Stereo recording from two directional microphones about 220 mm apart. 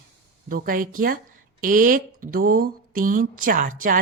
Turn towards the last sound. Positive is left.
turn(degrees=-40)  # may be behind; listen again after turning